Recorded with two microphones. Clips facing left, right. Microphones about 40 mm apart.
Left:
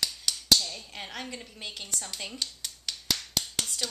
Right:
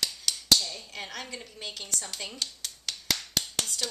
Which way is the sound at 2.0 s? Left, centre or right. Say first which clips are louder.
Even; centre.